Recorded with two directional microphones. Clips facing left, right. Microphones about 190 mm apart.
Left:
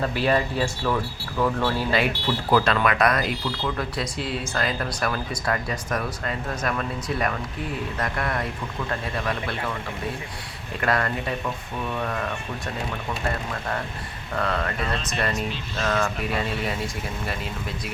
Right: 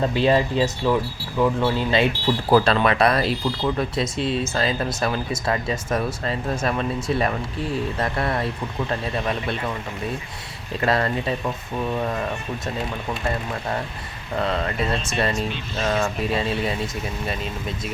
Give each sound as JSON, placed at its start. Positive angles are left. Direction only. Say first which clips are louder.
{"t": 0.0, "sound": "speech", "louder": "right 4 dB", "side_deg": -25}
{"t": 2.2, "sound": "speech", "louder": "right 4 dB", "side_deg": -35}
{"t": 10.8, "sound": "speech", "louder": "right 3 dB", "side_deg": -25}
{"t": 14.3, "sound": "speech", "louder": "right 3 dB", "side_deg": -20}